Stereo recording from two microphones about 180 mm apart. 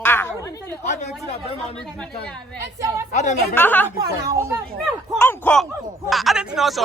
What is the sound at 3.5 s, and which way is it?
Speech, 10° left (ahead or behind).